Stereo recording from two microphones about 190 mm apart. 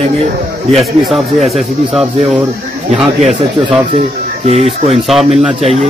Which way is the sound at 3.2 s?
35° right (ahead or behind).